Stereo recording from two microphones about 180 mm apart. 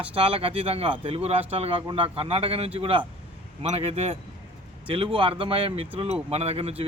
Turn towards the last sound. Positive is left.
turn(degrees=-35)  # may be behind; listen again after turning